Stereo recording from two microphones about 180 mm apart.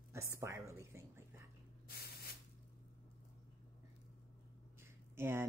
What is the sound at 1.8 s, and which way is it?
Spray, 60° left (ahead or behind).